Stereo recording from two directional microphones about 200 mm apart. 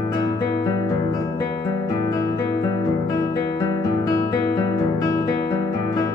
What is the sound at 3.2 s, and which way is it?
Guitar, 15° left (ahead or behind).